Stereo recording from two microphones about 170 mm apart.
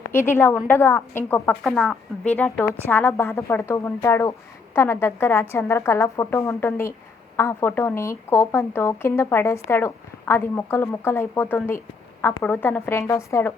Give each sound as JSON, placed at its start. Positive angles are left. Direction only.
{"t": 0.1, "sound": "a woman's voice", "side_deg": 15}
{"t": 1.6, "sound": "a woman's voice", "side_deg": 0}